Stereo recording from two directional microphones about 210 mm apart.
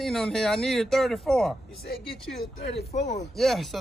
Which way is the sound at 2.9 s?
30° left (ahead or behind).